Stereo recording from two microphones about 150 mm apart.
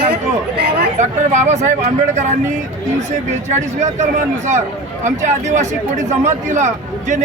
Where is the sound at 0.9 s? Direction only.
50° right (ahead or behind).